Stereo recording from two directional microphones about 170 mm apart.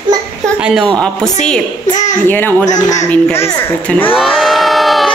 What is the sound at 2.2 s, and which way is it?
Speech, 10° left (ahead or behind).